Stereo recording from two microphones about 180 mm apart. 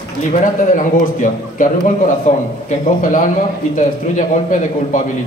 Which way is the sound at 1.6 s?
50° left (ahead or behind).